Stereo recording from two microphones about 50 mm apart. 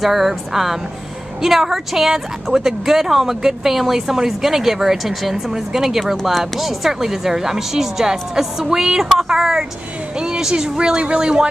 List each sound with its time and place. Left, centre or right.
0.0 s a woman's voice: centre